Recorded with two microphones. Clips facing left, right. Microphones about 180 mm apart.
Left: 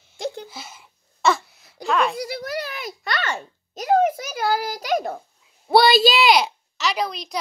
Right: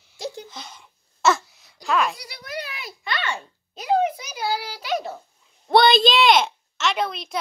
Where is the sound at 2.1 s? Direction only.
50° left (ahead or behind).